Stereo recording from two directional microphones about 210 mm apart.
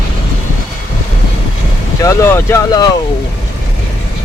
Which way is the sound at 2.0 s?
15° left (ahead or behind).